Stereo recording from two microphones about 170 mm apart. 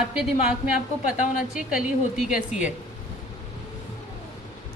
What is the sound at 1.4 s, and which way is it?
Speech, 5° right (ahead or behind).